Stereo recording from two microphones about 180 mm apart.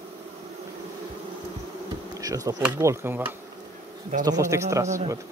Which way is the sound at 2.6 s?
15° right (ahead or behind).